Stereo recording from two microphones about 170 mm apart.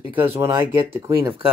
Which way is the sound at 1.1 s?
30° right (ahead or behind).